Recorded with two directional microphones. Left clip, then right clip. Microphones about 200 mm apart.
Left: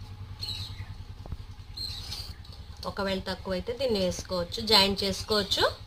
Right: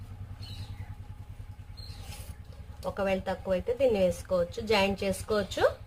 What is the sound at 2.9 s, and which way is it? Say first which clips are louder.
A woman's voice: right 2 dB; 30° right (ahead or behind).